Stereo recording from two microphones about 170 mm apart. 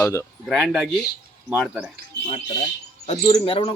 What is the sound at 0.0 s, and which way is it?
Speech, 15° left (ahead or behind).